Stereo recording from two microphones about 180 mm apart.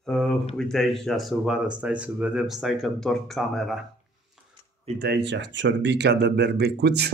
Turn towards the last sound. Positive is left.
turn(degrees=-65)  # may be behind; listen again after turning